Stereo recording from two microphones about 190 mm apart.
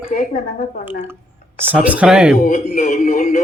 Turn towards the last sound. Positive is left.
turn(degrees=45)  # may be behind; listen again after turning